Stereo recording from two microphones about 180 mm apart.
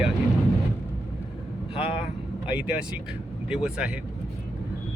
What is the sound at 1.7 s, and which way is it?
Vehicle, 35° left (ahead or behind).